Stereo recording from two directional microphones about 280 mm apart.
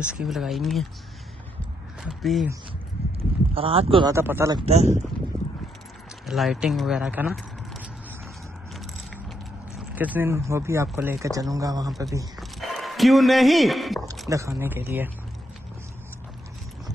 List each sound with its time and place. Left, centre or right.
0.0 s speech: centre
2.0 s speech: centre
3.2 s speech: centre
5.3 s a sound: centre
6.2 s speech: centre
9.9 s speech: centre
12.4 s a sound: centre
14.3 s speech: centre